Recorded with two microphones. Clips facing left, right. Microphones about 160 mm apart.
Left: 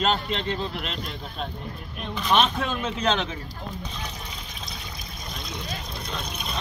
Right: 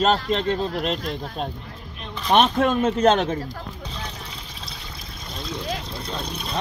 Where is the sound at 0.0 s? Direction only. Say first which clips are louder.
Right 5 dB; 40° right (ahead or behind).